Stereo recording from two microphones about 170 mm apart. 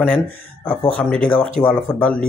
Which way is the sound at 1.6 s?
10° left (ahead or behind).